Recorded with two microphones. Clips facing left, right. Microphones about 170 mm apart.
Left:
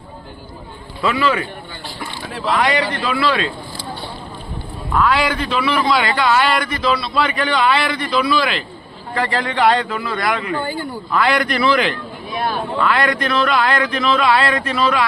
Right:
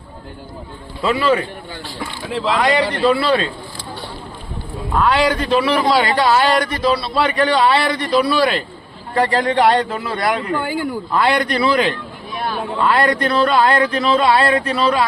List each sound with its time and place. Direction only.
1.0 s a man's voice: 35° right (ahead or behind)
2.6 s a man's voice: 35° right (ahead or behind)
5.0 s a man's voice: 35° right (ahead or behind)